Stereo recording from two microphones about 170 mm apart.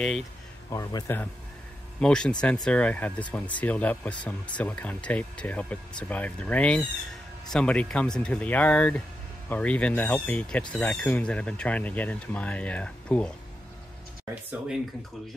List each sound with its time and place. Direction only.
0.7 s speech: 20° left (ahead or behind)